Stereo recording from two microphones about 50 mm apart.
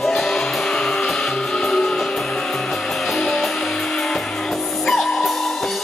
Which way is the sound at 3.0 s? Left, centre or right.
Centre.